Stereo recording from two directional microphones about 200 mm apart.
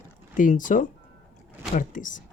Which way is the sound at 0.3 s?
40° left (ahead or behind).